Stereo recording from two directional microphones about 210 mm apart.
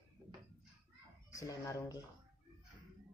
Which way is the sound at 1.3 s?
15° left (ahead or behind).